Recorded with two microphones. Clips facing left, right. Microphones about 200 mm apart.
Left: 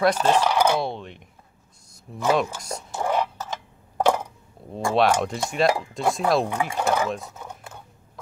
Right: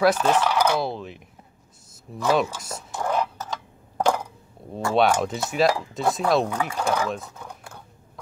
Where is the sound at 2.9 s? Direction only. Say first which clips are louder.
Left 1 dB; 10° left (ahead or behind).